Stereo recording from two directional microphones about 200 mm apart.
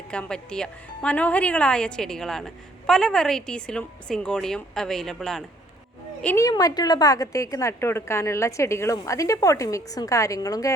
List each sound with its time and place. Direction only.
0.1 s speech: 5° left (ahead or behind)
6.2 s a woman's voice: 15° left (ahead or behind)